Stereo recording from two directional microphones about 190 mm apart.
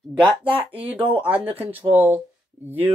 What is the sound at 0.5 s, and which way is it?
Speech, 30° right (ahead or behind).